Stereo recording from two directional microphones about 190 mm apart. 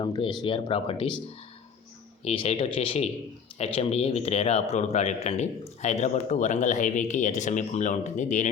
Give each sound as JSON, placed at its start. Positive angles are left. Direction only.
{"t": 0.0, "sound": "speech", "side_deg": 20}
{"t": 2.2, "sound": "speech", "side_deg": 30}